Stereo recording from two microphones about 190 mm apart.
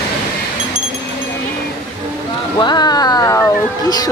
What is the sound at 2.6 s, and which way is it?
Speech, 25° left (ahead or behind).